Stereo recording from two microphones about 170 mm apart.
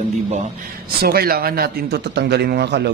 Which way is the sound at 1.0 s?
65° right (ahead or behind).